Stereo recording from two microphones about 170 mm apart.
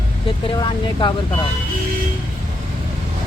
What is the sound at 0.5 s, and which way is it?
Speech, 25° left (ahead or behind).